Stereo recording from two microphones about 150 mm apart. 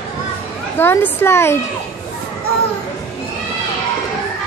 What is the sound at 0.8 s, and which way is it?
Speech, 15° left (ahead or behind).